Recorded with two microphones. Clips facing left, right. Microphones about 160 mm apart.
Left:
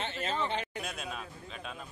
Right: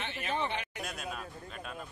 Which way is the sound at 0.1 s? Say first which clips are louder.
Left 1 dB; 15° right (ahead or behind).